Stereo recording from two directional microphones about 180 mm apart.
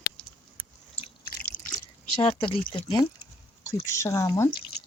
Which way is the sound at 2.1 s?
30° left (ahead or behind).